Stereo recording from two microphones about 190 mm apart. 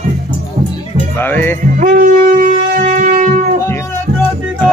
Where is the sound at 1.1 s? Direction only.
10° left (ahead or behind).